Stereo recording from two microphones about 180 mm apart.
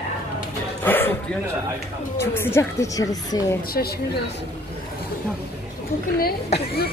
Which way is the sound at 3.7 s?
60° left (ahead or behind).